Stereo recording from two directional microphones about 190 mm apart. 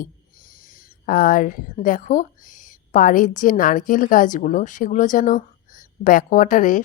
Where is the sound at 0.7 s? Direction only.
45° left (ahead or behind).